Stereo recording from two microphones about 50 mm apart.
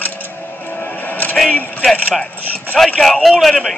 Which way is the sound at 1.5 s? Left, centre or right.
Left.